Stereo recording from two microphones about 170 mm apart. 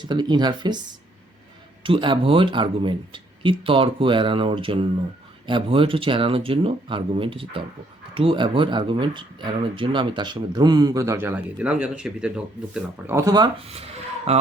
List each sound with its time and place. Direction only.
0.0 s speech: 25° right (ahead or behind)
1.8 s speech: 30° right (ahead or behind)
13.7 s speech: 35° right (ahead or behind)